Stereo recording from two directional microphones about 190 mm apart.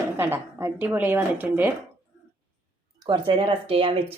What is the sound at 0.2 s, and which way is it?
Speech, 10° right (ahead or behind).